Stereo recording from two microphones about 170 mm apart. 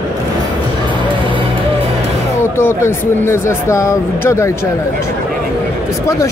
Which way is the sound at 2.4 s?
15° left (ahead or behind).